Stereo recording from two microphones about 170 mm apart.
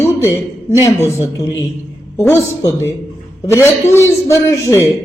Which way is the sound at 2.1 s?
15° left (ahead or behind).